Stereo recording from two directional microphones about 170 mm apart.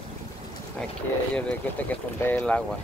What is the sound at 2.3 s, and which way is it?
Speech, 10° left (ahead or behind).